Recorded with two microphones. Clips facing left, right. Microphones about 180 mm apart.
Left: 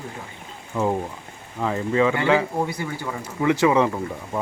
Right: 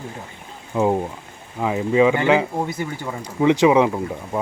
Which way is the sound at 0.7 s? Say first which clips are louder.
Right 4 dB; 20° right (ahead or behind).